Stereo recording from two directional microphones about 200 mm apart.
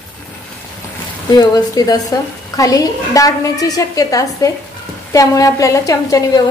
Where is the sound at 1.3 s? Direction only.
20° left (ahead or behind).